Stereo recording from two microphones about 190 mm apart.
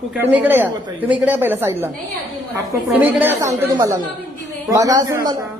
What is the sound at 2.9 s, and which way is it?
Speech, 10° right (ahead or behind).